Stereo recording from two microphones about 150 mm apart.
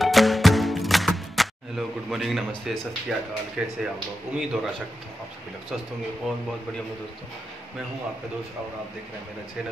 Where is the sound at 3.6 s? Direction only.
5° right (ahead or behind).